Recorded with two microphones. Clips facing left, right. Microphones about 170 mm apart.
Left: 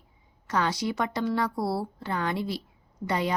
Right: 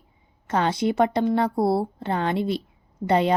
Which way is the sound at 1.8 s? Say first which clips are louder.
Right 6 dB; 25° right (ahead or behind).